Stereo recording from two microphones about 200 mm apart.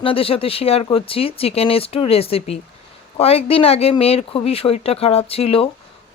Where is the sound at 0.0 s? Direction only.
30° left (ahead or behind).